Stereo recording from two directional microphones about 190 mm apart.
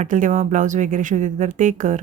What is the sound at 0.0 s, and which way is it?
A woman's voice, 40° right (ahead or behind).